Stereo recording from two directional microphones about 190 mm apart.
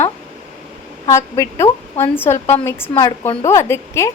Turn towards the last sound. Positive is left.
turn(degrees=15)  # may be behind; listen again after turning